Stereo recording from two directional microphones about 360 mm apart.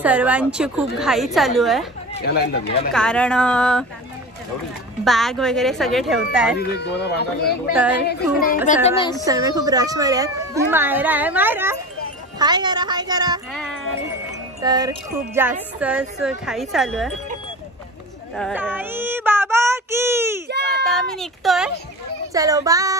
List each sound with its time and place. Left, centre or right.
0.0 s a woman's voice: centre
2.1 s speech: left
2.9 s a woman's voice: centre
5.0 s a woman's voice: centre
6.8 s speech: left
8.8 s a woman's voice: centre
9.2 s speech: centre
14.6 s a woman's voice: centre
18.3 s child singing: centre
20.8 s a woman's voice: centre